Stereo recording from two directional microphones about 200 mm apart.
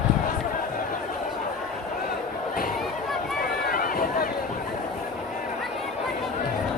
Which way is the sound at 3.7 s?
45° left (ahead or behind).